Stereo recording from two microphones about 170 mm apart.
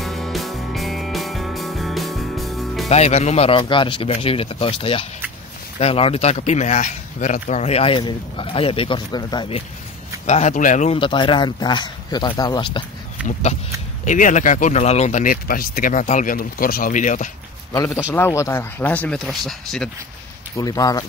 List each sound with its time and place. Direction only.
0.0 s music: centre (ahead or behind)
2.9 s speech: 40° left (ahead or behind); by 9.6 s 25° left (ahead or behind)
10.2 s speech: 40° left (ahead or behind)
11.0 s speech: 30° left (ahead or behind)
14.0 s speech: 45° left (ahead or behind)
18.1 s speech: 15° left (ahead or behind)
20.5 s speech: 20° left (ahead or behind)